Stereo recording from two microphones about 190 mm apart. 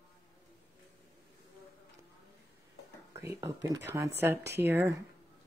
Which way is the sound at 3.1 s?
15° right (ahead or behind).